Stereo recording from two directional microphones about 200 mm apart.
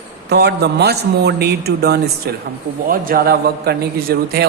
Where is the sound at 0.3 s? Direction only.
55° right (ahead or behind).